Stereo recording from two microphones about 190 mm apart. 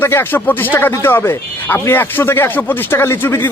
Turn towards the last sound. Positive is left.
turn(degrees=10)  # may be behind; listen again after turning